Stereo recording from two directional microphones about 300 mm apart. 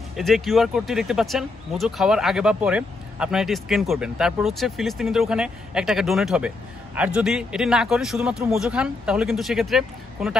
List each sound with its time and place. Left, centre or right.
0.1 s speech: centre